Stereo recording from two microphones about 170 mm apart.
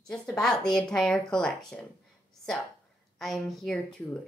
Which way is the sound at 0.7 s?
5° left (ahead or behind).